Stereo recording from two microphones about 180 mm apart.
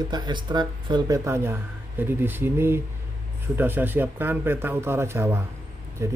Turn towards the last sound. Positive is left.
turn(degrees=-15)  # may be behind; listen again after turning